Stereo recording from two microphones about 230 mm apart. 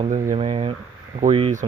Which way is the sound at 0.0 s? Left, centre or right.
Right.